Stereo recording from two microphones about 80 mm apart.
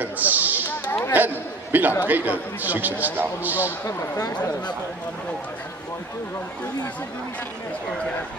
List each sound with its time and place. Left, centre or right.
0.0 s a sound: right
1.1 s speech: right
3.8 s speech: left